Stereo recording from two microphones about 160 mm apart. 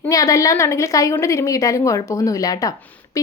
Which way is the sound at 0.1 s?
20° left (ahead or behind).